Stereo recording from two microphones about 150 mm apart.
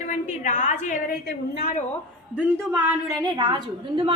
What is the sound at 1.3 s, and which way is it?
Speech, 90° left.